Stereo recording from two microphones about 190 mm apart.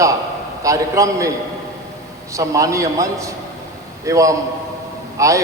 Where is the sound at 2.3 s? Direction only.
15° right (ahead or behind).